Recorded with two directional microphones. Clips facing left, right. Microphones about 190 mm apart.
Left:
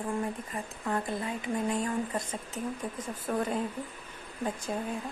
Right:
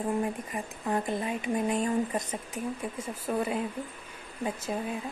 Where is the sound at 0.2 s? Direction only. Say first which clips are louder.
Right 2 dB; 15° right (ahead or behind).